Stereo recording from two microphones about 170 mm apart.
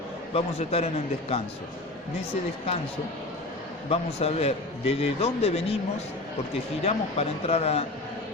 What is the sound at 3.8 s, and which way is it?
A man's voice, 35° left (ahead or behind).